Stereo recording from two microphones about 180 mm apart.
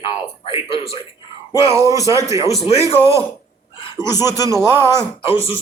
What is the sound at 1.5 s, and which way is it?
Speech, 15° right (ahead or behind).